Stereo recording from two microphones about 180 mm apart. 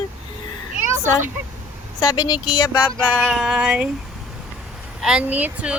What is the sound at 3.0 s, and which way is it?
Speech, 5° left (ahead or behind).